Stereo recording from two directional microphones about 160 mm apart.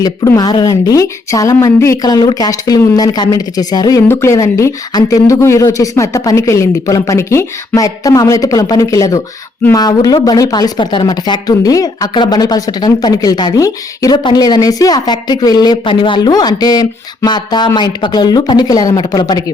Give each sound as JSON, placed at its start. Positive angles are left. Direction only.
{"t": 0.0, "sound": "speech", "side_deg": 25}